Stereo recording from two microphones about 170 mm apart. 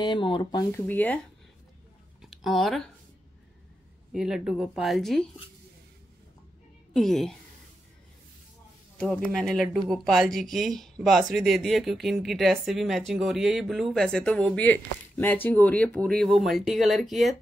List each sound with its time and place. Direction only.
0.0 s speech: 25° left (ahead or behind); by 1.2 s 10° left (ahead or behind)
2.2 s speech: centre (ahead or behind)
4.1 s speech: 5° right (ahead or behind)
6.9 s speech: centre (ahead or behind)
8.9 s speech: 5° left (ahead or behind)